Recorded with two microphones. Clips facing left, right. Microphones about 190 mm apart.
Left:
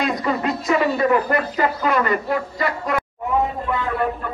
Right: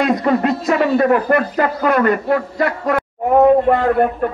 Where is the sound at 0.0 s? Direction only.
55° right (ahead or behind).